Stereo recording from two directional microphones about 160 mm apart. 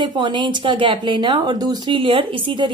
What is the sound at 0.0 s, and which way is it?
Speech, 30° right (ahead or behind).